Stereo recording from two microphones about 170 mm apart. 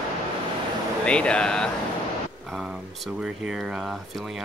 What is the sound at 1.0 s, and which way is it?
Speech, 5° left (ahead or behind).